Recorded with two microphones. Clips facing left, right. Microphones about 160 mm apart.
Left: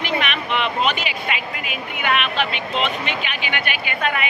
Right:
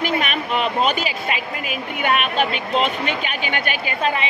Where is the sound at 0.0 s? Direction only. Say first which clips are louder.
Right 2 dB; 40° right (ahead or behind).